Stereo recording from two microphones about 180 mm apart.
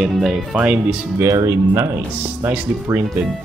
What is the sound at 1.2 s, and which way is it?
Speech, 15° right (ahead or behind).